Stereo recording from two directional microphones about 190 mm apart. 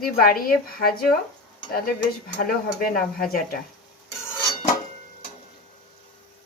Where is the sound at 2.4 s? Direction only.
50° left (ahead or behind).